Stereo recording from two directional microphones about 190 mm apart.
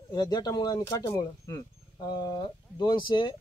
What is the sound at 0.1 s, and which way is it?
Speech, 20° left (ahead or behind).